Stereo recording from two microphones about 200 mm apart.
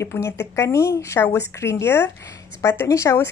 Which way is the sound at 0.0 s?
10° left (ahead or behind).